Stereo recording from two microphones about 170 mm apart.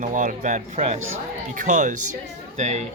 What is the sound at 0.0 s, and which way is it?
Speech, 50° right (ahead or behind).